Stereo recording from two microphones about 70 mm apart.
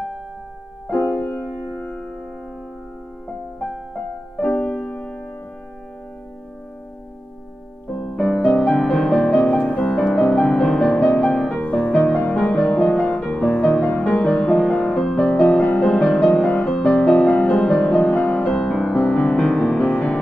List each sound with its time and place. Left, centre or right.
0.8 s music: centre
3.5 s music: centre
4.4 s music: centre
7.9 s music: centre
9.5 s music: centre
10.0 s music: centre
19.9 s music: centre